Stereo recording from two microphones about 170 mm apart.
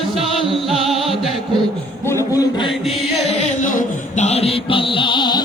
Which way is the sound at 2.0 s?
20° left (ahead or behind).